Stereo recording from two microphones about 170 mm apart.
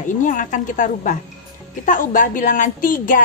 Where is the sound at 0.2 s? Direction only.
50° left (ahead or behind).